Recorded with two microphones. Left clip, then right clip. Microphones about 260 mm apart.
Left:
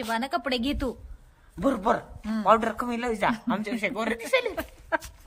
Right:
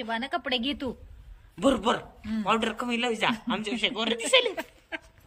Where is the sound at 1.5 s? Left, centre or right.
Left.